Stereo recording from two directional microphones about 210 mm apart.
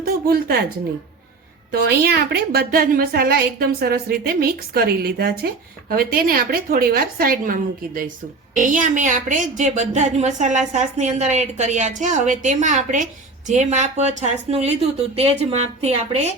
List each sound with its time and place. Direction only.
0.3 s a woman's voice: 45° right (ahead or behind)
1.7 s a woman's voice: 50° right (ahead or behind); by 16.3 s 30° right (ahead or behind)